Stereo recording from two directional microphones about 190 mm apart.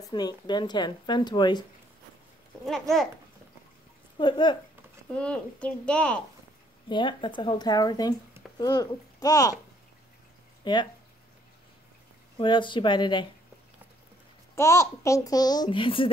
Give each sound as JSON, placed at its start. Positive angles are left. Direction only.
{"t": 0.1, "sound": "a child's voice", "side_deg": 20}
{"t": 2.6, "sound": "speech", "side_deg": 0}
{"t": 4.2, "sound": "a child's voice", "side_deg": 25}
{"t": 5.1, "sound": "speech", "side_deg": 5}
{"t": 6.9, "sound": "a child's voice", "side_deg": 25}
{"t": 10.6, "sound": "speech", "side_deg": 25}
{"t": 12.4, "sound": "a child's voice", "side_deg": 25}
{"t": 14.5, "sound": "a child's voice", "side_deg": 15}